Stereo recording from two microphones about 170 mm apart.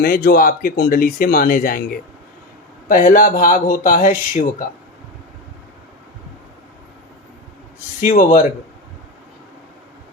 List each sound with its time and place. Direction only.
0.0 s speech: 60° left (ahead or behind)
2.9 s speech: 50° left (ahead or behind)
8.0 s speech: 50° left (ahead or behind)